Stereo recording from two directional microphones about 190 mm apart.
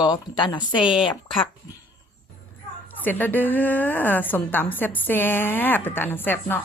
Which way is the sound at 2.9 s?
10° left (ahead or behind).